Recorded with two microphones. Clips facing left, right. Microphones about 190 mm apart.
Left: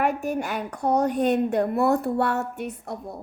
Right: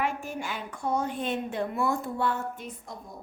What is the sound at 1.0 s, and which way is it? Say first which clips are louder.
Child singing: left 9 dB; 65° left (ahead or behind).